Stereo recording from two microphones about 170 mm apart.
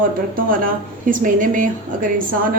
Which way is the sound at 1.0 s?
50° right (ahead or behind).